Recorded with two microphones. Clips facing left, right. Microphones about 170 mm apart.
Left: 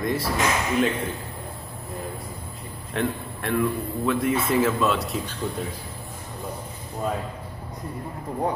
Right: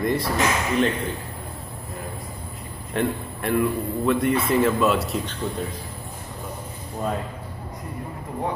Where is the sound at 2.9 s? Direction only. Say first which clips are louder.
Right 2 dB; centre (ahead or behind).